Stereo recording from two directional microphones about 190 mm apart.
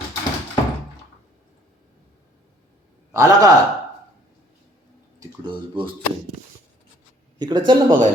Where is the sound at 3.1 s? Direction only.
20° right (ahead or behind).